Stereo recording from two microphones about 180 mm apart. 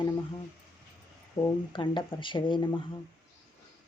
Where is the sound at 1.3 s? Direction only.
25° left (ahead or behind).